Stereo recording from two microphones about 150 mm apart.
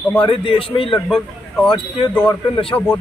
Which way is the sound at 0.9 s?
Centre (ahead or behind).